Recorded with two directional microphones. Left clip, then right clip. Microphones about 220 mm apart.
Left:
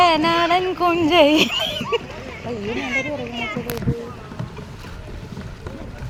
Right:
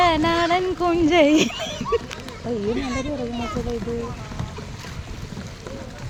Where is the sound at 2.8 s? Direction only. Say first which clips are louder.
Left 3 dB; 55° right (ahead or behind).